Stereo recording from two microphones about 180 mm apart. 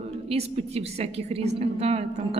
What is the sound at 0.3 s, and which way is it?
Speech, 35° right (ahead or behind).